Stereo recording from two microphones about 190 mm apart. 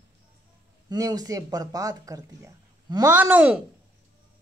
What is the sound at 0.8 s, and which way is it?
Speech, 20° right (ahead or behind).